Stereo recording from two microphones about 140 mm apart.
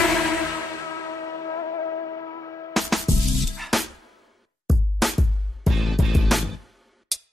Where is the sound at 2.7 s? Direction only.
Centre (ahead or behind).